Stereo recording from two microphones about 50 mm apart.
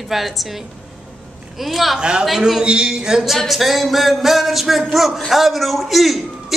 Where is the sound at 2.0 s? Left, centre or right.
Centre.